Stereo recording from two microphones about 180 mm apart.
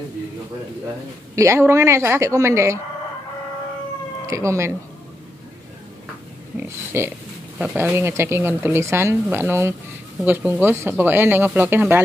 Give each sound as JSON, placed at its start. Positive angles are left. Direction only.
{"t": 1.3, "sound": "speech", "side_deg": -15}
{"t": 4.3, "sound": "speech", "side_deg": -15}
{"t": 6.5, "sound": "speech", "side_deg": -10}